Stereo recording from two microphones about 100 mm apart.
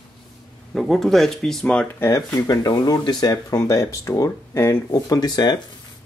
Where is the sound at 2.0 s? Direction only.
30° left (ahead or behind).